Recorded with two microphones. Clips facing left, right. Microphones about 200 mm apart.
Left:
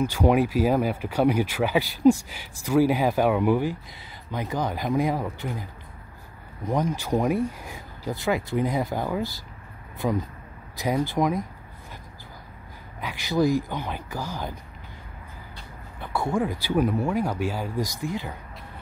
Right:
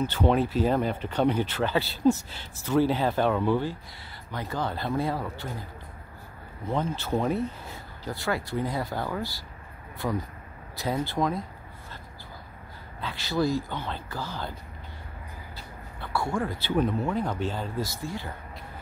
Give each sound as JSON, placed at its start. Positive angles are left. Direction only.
{"t": 0.0, "sound": "speech", "side_deg": 10}
{"t": 13.0, "sound": "speech", "side_deg": 15}
{"t": 16.0, "sound": "speech", "side_deg": 20}